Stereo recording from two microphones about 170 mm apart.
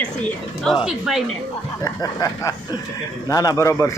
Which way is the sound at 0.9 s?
Centre (ahead or behind).